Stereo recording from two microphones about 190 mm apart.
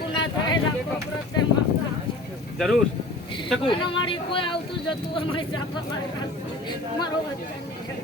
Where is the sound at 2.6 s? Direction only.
Centre (ahead or behind).